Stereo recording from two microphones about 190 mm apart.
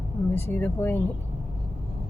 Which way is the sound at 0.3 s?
10° left (ahead or behind).